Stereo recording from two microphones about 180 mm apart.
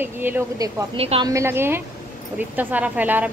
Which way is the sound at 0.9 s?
30° right (ahead or behind).